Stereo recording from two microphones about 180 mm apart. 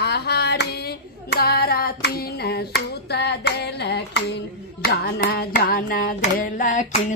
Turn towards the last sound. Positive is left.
turn(degrees=45)  # may be behind; listen again after turning